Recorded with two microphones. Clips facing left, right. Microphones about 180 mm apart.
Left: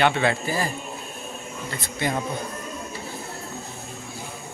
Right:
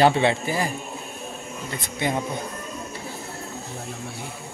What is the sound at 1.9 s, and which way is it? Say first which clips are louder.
Speech: right 1 dB; 20° right (ahead or behind).